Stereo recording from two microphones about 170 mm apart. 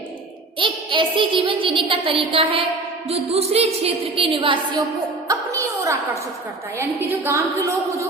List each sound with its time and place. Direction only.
0.6 s child singing: 30° right (ahead or behind)
1.9 s a woman's voice: 30° right (ahead or behind)
5.3 s a sound: 20° right (ahead or behind)
7.3 s speech: 15° right (ahead or behind)